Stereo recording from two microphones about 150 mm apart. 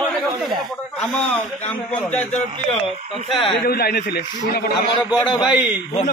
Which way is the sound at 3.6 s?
90° left.